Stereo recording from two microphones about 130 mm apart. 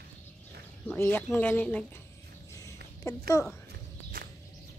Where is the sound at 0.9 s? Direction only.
20° left (ahead or behind).